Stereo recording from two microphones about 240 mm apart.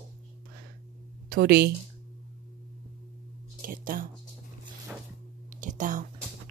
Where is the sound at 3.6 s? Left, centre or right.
Right.